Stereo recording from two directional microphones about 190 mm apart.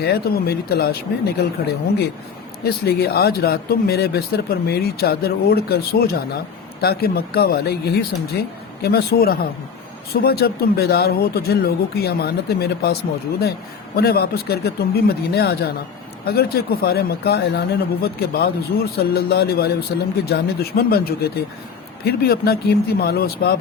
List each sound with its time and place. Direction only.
0.0 s speech: 55° left (ahead or behind)
2.6 s speech: 55° left (ahead or behind)